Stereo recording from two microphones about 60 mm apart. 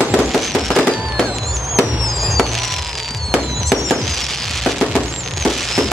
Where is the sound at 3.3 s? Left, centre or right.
Centre.